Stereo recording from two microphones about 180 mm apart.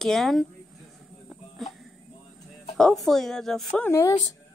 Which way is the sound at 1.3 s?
Centre (ahead or behind).